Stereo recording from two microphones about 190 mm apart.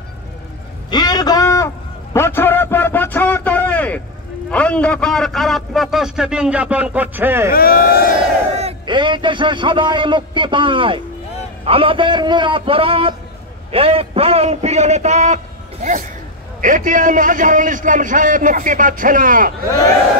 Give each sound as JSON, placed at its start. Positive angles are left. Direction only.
{"t": 0.8, "sound": "a sound", "side_deg": 20}
{"t": 4.5, "sound": "a man's voice", "side_deg": 5}
{"t": 7.5, "sound": "speech", "side_deg": 50}
{"t": 8.5, "sound": "a man's voice", "side_deg": -30}